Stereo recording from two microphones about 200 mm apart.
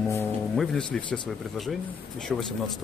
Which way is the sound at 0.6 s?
5° left (ahead or behind).